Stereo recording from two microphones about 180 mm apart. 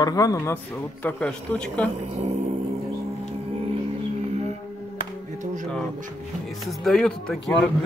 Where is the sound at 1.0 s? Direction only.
5° left (ahead or behind).